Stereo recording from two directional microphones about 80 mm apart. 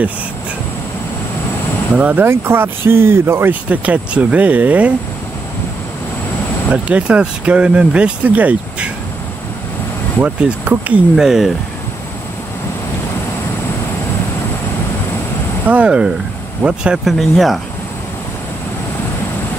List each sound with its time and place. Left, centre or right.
2.0 s speech: right
3.6 s speech: centre
6.7 s speech: centre
10.2 s speech: centre
11.1 s speech: centre
15.6 s speech: centre
17.2 s speech: centre